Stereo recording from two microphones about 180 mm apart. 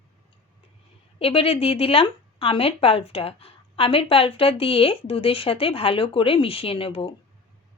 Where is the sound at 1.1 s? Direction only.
30° left (ahead or behind).